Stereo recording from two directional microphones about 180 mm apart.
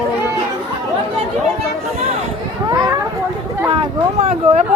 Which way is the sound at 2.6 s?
20° right (ahead or behind).